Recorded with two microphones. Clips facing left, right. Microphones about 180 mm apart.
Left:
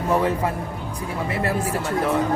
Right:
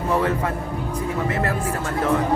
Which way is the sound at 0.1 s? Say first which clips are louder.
Left 1 dB; 15° left (ahead or behind).